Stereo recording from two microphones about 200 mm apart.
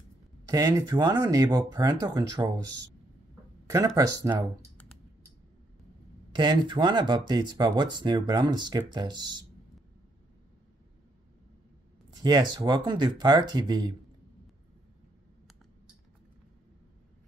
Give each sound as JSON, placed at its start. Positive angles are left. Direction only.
{"t": 0.5, "sound": "speech", "side_deg": -15}
{"t": 3.6, "sound": "speech", "side_deg": -15}
{"t": 6.3, "sound": "speech", "side_deg": -20}
{"t": 12.2, "sound": "speech", "side_deg": -20}